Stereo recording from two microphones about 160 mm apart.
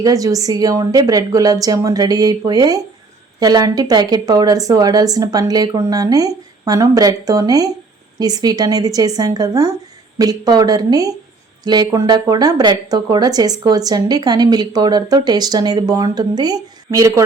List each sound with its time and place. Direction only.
0.0 s a woman's voice: 20° right (ahead or behind)